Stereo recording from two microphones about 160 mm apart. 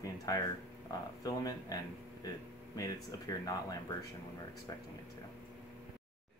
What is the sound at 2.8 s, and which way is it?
Speech, 20° left (ahead or behind).